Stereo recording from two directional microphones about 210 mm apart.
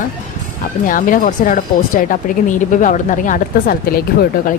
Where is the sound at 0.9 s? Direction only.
40° left (ahead or behind).